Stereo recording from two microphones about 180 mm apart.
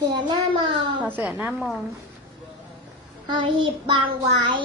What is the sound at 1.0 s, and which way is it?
Speech, 10° right (ahead or behind).